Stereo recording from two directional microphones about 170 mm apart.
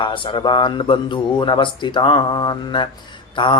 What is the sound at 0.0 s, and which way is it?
Speech, 30° left (ahead or behind).